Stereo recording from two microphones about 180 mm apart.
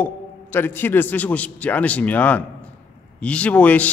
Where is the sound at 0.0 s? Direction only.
10° left (ahead or behind).